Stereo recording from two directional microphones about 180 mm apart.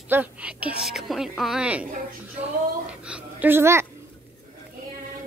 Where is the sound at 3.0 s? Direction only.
10° right (ahead or behind).